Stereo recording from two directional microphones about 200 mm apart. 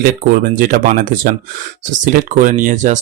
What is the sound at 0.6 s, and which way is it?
Speech, 45° right (ahead or behind).